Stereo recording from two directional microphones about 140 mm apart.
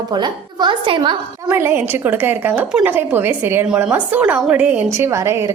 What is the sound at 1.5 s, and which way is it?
A woman's voice, 15° right (ahead or behind).